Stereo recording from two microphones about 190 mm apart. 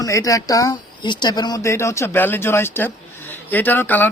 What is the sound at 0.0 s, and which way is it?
A man's voice, 15° left (ahead or behind).